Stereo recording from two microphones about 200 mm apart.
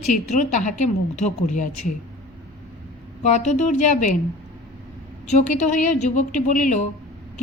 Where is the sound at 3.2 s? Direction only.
35° left (ahead or behind).